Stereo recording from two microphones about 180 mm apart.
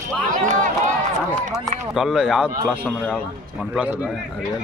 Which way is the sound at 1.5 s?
Centre (ahead or behind).